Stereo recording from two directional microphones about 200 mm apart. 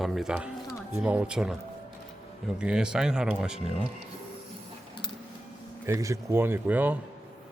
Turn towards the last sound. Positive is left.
turn(degrees=-10)  # may be behind; listen again after turning